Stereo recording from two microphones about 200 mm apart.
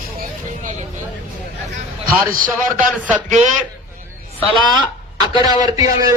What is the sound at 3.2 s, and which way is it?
Speech, 35° right (ahead or behind).